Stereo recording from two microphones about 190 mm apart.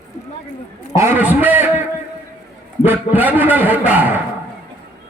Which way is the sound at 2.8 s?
10° right (ahead or behind).